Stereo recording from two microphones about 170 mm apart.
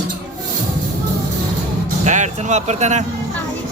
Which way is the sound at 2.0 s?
45° right (ahead or behind).